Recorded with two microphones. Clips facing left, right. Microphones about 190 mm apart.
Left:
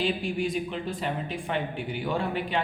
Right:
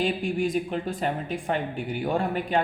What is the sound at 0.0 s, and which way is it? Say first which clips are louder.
Speech: right 2 dB; 45° right (ahead or behind).